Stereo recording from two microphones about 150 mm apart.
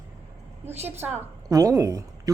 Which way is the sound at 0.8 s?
15° right (ahead or behind).